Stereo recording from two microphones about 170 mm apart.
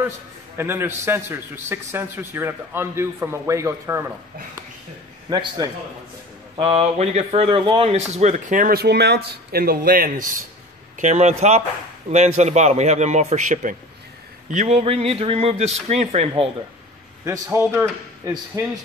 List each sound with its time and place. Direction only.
0.6 s a man's voice: 15° right (ahead or behind)
5.3 s a man's voice: 25° right (ahead or behind)
6.5 s speech: 35° right (ahead or behind); by 10.2 s 60° right (ahead or behind)
11.0 s speech: 45° right (ahead or behind)
17.2 s a man's voice: 15° right (ahead or behind)